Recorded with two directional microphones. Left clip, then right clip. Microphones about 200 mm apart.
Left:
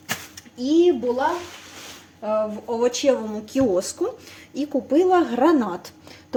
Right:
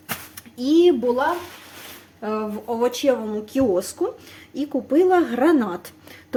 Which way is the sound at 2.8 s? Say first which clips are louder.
Even; 10° right (ahead or behind).